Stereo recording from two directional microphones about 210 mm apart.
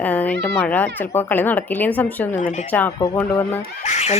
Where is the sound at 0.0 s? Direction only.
5° left (ahead or behind).